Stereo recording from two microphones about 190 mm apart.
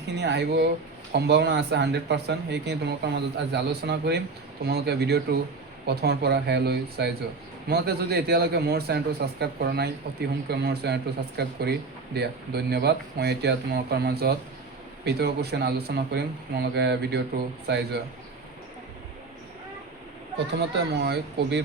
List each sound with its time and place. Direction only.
0.2 s a man's voice: 60° right (ahead or behind)
20.6 s a man's voice: 60° right (ahead or behind)